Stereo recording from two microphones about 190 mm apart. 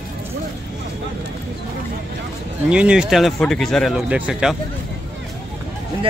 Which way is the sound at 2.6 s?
5° right (ahead or behind).